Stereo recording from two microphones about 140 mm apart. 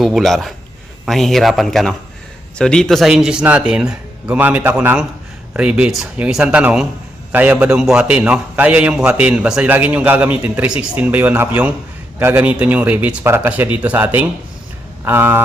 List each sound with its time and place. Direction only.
0.0 s a man's voice: centre (ahead or behind); by 15.4 s 15° right (ahead or behind)